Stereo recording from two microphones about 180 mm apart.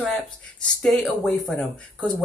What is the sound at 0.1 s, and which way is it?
Speech, 5° left (ahead or behind).